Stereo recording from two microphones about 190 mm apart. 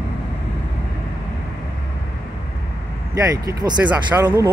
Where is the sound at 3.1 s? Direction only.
15° right (ahead or behind).